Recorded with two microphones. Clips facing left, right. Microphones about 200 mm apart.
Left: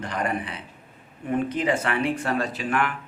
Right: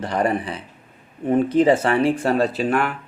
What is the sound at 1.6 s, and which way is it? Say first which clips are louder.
Speech: right 7 dB; 35° right (ahead or behind).